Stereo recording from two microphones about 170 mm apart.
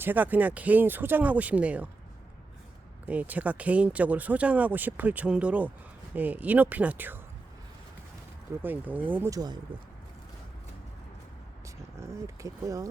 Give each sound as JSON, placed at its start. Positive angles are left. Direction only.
{"t": 0.0, "sound": "speech", "side_deg": -10}
{"t": 3.1, "sound": "speech", "side_deg": -10}
{"t": 8.6, "sound": "speech", "side_deg": -10}
{"t": 11.9, "sound": "speech", "side_deg": -15}